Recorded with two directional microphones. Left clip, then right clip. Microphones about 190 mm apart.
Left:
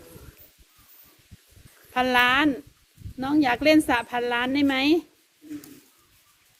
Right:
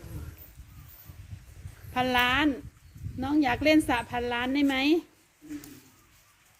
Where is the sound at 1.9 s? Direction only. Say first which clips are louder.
Left 5 dB; 10° left (ahead or behind).